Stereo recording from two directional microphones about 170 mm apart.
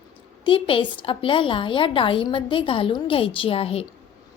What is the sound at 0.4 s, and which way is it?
A woman's voice, 30° left (ahead or behind).